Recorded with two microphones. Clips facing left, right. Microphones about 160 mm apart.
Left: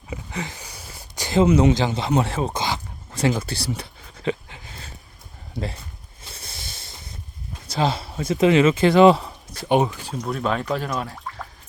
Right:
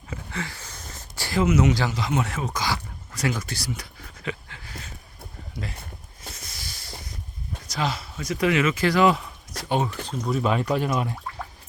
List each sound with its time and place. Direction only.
0.1 s a sound: 15° left (ahead or behind)
1.7 s speech: 25° left (ahead or behind)
6.3 s a sound: 30° left (ahead or behind)
7.7 s speech: 30° left (ahead or behind)
9.6 s speech: 20° left (ahead or behind)
10.3 s speech: 5° right (ahead or behind)